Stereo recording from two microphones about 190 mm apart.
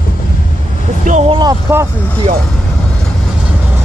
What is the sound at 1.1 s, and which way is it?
Vehicle, 40° right (ahead or behind).